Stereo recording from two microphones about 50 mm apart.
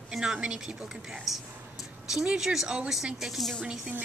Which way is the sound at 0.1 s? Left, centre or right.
Centre.